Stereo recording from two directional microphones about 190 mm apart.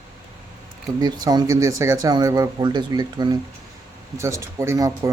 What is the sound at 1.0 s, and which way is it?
Speech, 20° right (ahead or behind).